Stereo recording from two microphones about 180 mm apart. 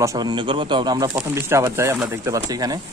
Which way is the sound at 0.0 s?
20° right (ahead or behind).